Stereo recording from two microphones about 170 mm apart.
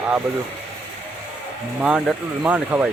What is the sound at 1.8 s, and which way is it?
Speech, 5° right (ahead or behind).